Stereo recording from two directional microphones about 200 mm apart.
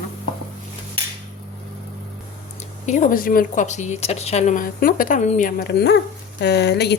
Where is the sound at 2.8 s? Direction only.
35° left (ahead or behind).